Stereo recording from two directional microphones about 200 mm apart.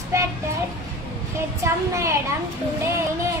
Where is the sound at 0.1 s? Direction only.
15° right (ahead or behind).